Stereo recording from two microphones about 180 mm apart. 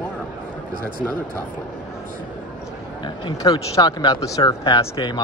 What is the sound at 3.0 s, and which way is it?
Speech, 20° left (ahead or behind).